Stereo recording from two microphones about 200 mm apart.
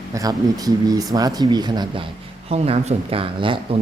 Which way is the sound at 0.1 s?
15° right (ahead or behind).